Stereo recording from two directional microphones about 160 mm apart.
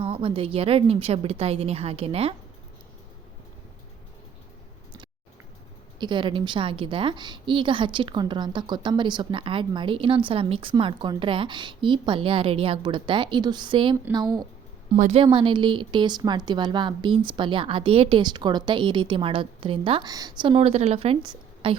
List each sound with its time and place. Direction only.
0.0 s a woman's voice: 35° right (ahead or behind)
6.0 s a woman's voice: 30° right (ahead or behind)
14.9 s a woman's voice: 50° right (ahead or behind)
15.2 s a woman's voice: 30° right (ahead or behind)